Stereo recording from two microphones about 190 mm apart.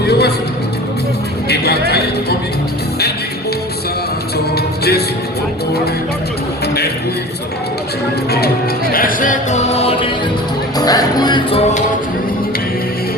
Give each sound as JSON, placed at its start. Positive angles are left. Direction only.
{"t": 0.0, "sound": "music", "side_deg": 60}
{"t": 1.5, "sound": "music", "side_deg": 60}
{"t": 4.5, "sound": "music", "side_deg": 55}
{"t": 8.9, "sound": "music", "side_deg": 50}
{"t": 10.8, "sound": "music", "side_deg": 20}